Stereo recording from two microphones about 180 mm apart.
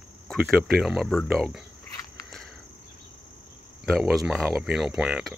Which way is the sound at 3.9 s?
Centre (ahead or behind).